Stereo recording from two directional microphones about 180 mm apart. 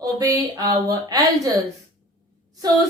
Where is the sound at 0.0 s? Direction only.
20° right (ahead or behind).